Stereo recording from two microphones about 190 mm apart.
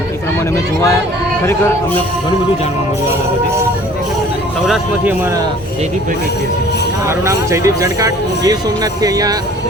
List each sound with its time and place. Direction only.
4.6 s speech: 5° right (ahead or behind)
7.3 s speech: 15° right (ahead or behind)